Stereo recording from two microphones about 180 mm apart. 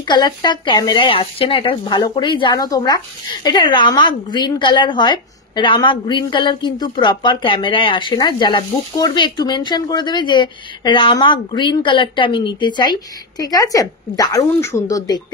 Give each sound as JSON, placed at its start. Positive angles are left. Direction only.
{"t": 0.0, "sound": "a woman's voice", "side_deg": 25}